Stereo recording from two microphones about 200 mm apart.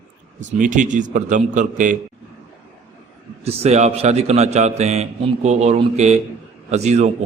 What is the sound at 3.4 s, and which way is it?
A man's voice, 30° right (ahead or behind).